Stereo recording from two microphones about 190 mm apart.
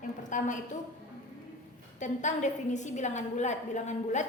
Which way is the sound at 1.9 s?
40° left (ahead or behind).